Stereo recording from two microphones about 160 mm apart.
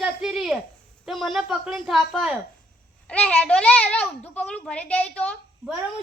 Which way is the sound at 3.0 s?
10° left (ahead or behind).